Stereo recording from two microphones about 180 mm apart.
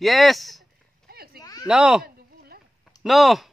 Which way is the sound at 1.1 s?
60° right (ahead or behind).